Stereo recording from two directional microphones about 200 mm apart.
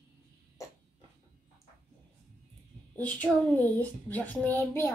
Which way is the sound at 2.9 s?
10° left (ahead or behind).